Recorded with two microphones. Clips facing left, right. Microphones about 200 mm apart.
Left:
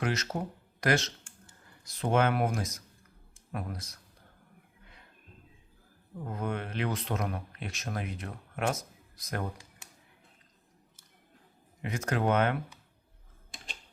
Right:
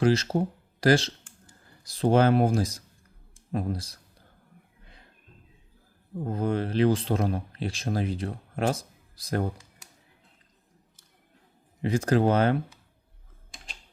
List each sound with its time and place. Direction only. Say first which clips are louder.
0.0 s speech: right 9 dB; 30° right (ahead or behind)
6.1 s speech: right 7 dB; 30° right (ahead or behind)
11.8 s speech: right 8 dB; 30° right (ahead or behind)